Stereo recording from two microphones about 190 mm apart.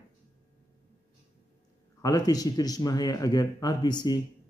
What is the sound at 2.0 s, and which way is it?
Speech, 20° left (ahead or behind).